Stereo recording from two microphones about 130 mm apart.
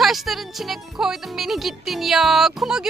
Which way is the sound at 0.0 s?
Centre (ahead or behind).